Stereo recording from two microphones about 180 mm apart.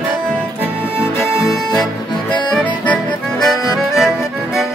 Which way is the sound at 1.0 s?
Centre (ahead or behind).